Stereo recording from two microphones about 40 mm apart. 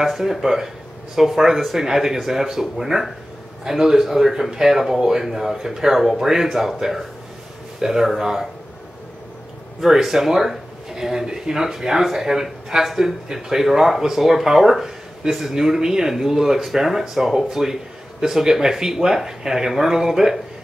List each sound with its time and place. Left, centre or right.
0.0 s speech: centre
9.8 s speech: centre